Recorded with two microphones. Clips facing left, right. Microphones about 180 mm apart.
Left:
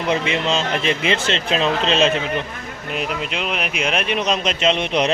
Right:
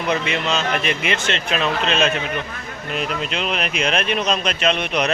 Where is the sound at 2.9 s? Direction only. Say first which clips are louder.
Even; 15° left (ahead or behind).